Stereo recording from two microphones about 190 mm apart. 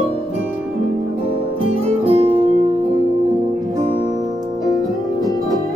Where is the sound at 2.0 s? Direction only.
30° right (ahead or behind).